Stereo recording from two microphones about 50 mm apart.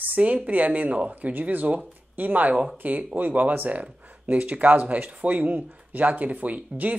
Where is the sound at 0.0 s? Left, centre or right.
Right.